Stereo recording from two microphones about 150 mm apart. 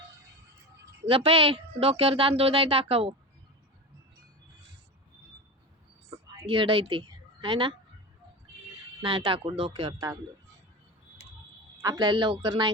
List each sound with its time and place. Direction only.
1.0 s speech: 40° right (ahead or behind)
6.4 s speech: 35° right (ahead or behind)
9.0 s speech: 35° right (ahead or behind)
11.8 s speech: 30° right (ahead or behind)